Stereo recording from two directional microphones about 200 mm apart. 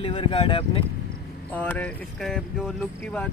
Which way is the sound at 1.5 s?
10° left (ahead or behind).